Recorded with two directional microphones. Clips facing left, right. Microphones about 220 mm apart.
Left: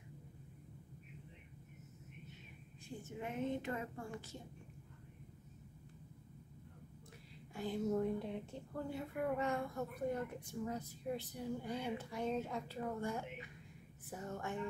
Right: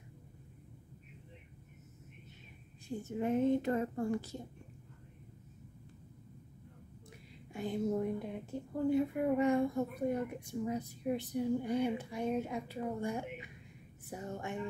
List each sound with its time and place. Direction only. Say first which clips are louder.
3.0 s a woman's voice: right 10 dB; 40° right (ahead or behind)
7.5 s a woman's voice: right 3 dB; 15° right (ahead or behind)